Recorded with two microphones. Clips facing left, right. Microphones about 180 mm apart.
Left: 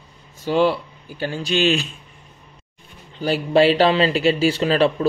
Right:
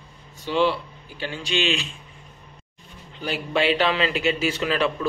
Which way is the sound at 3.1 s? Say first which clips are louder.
Left 8 dB; 35° left (ahead or behind).